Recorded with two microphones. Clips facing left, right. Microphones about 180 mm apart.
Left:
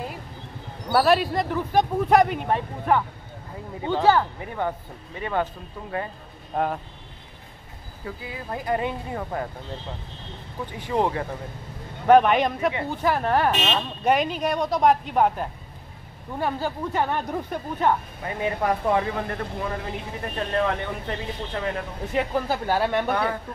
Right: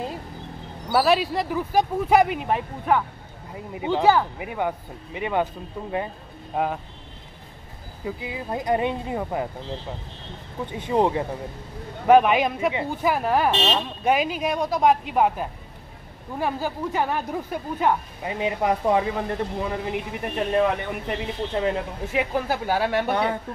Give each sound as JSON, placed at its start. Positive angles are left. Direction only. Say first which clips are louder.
{"t": 0.9, "sound": "speech", "louder": "even", "side_deg": 0}
{"t": 6.5, "sound": "speech", "louder": "even", "side_deg": -5}
{"t": 8.0, "sound": "speech", "louder": "right 4 dB", "side_deg": -20}
{"t": 10.6, "sound": "speech", "louder": "right 3 dB", "side_deg": -20}
{"t": 12.1, "sound": "speech", "louder": "even", "side_deg": -5}
{"t": 22.1, "sound": "speech", "louder": "even", "side_deg": -5}